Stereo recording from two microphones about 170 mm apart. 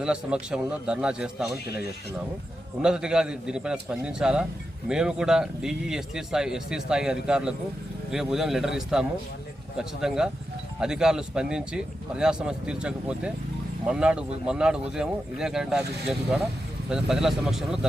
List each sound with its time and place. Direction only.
0.0 s a man's voice: 5° right (ahead or behind)
1.6 s speech: 70° left (ahead or behind)
2.8 s a man's voice: 5° right (ahead or behind)